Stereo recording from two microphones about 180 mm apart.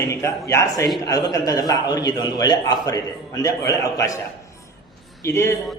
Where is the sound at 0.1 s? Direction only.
15° left (ahead or behind).